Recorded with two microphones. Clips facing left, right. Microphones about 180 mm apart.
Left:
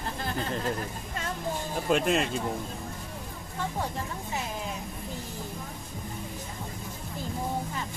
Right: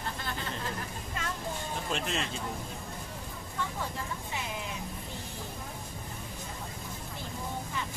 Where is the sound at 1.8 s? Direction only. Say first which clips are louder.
Left 10 dB; 55° left (ahead or behind).